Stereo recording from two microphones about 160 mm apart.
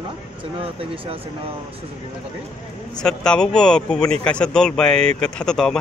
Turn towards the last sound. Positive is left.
turn(degrees=5)  # may be behind; listen again after turning